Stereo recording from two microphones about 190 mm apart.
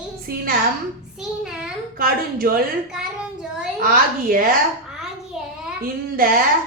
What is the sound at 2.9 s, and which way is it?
Child singing, 5° right (ahead or behind).